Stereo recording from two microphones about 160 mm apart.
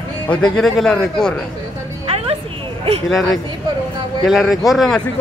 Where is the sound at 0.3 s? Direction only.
5° left (ahead or behind).